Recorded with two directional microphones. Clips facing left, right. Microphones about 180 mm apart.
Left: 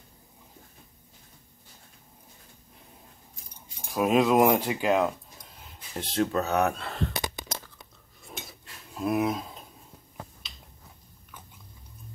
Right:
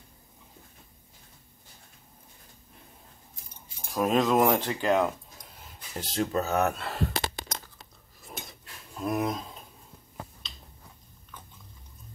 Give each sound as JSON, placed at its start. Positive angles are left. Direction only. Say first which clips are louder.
{"t": 3.9, "sound": "speech", "louder": "left 2 dB", "side_deg": 5}
{"t": 7.2, "sound": "a sound", "louder": "right 1 dB", "side_deg": 20}
{"t": 8.2, "sound": "cutlery", "louder": "even", "side_deg": 0}